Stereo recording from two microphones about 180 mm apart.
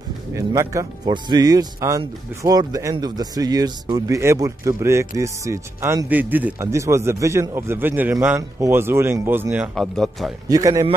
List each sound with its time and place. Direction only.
0.3 s speech: 15° right (ahead or behind)
9.8 s speech: centre (ahead or behind)
10.5 s a man's voice: 20° right (ahead or behind)